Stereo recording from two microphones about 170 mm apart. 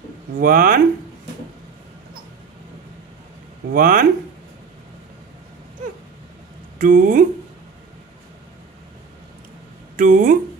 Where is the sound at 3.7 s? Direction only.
55° right (ahead or behind).